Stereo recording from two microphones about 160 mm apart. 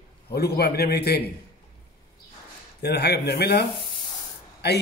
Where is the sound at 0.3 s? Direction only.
80° left.